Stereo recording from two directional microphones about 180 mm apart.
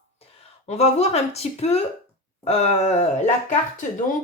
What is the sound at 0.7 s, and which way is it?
A woman's voice, 35° left (ahead or behind).